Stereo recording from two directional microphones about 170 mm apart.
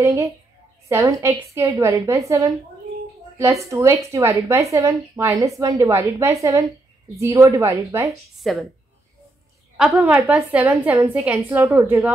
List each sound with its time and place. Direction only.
0.0 s a woman's voice: 15° right (ahead or behind)
8.4 s speech: centre (ahead or behind)
9.8 s a woman's voice: centre (ahead or behind)